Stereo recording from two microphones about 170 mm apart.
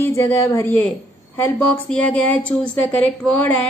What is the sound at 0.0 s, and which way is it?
A woman's voice, 15° left (ahead or behind).